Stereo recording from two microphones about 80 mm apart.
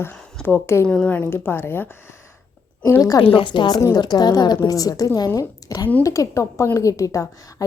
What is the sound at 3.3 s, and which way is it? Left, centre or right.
Speech, left.